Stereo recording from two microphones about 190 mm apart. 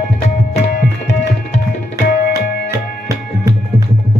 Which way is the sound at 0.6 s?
60° left (ahead or behind).